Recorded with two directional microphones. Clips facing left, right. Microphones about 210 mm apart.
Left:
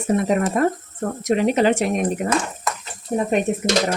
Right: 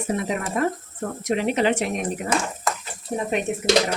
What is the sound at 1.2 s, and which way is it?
Speech, 45° left (ahead or behind).